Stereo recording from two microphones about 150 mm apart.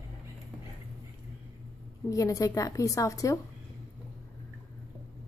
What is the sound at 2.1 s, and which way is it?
A woman's voice, 20° left (ahead or behind).